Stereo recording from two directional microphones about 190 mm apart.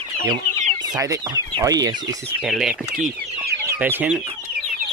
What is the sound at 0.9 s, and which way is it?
Speech, 20° right (ahead or behind).